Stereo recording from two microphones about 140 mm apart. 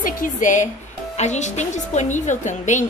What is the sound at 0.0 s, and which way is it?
Speech, 70° left (ahead or behind).